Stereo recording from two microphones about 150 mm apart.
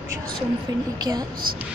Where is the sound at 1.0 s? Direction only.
25° right (ahead or behind).